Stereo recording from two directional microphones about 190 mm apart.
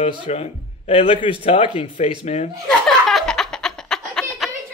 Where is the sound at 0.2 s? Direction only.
30° left (ahead or behind).